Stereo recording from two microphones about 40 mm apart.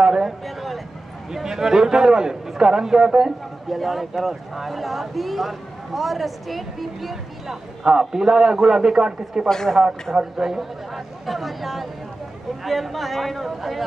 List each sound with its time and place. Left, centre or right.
0.0 s a sound: centre
1.3 s a man's voice: centre
3.7 s speech: centre
7.8 s a man's voice: centre
9.5 s a man's voice: centre
10.1 s a man's voice: centre